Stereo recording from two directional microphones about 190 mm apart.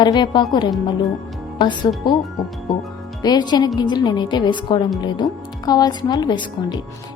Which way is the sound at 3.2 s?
20° left (ahead or behind).